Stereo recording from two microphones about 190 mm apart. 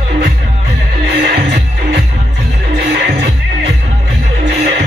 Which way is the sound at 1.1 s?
60° right (ahead or behind).